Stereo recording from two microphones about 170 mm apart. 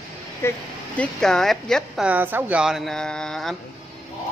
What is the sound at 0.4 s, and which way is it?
Speech, 15° left (ahead or behind).